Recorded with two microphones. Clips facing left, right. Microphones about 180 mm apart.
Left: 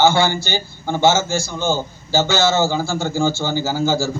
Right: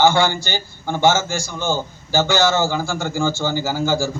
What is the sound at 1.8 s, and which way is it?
Speech, 20° left (ahead or behind).